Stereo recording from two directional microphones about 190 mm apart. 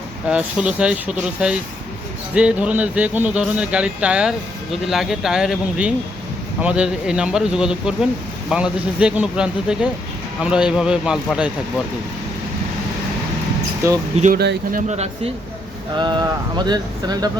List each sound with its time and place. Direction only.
0.3 s speech: 5° right (ahead or behind)
14.3 s speech: 50° right (ahead or behind); by 15.3 s 35° right (ahead or behind)
16.0 s speech: 20° right (ahead or behind)